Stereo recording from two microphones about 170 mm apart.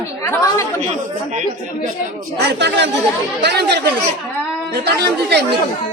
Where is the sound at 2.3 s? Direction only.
80° right.